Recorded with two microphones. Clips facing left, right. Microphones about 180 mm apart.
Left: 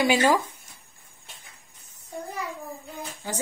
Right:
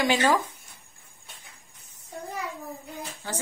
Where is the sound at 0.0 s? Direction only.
5° left (ahead or behind).